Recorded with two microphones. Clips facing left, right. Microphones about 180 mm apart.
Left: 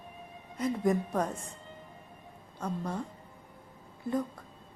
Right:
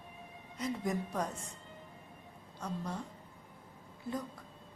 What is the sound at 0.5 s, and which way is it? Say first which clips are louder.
Speech: left 7 dB; 55° left (ahead or behind).